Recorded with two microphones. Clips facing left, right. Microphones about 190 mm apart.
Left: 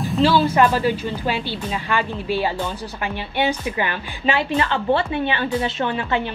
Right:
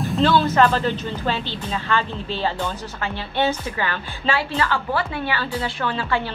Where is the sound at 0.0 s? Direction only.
Centre (ahead or behind).